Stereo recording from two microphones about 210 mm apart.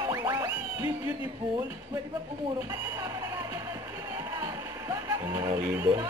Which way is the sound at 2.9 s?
15° right (ahead or behind).